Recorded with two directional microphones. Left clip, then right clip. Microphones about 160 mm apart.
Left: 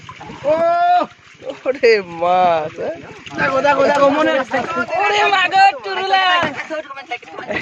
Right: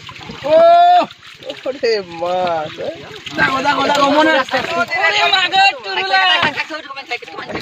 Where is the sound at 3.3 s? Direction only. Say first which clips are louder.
Even; 70° right (ahead or behind).